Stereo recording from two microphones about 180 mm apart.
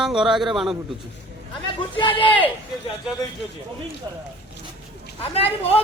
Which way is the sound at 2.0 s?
30° left (ahead or behind).